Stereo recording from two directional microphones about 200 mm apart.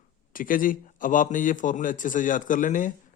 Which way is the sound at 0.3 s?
45° left (ahead or behind).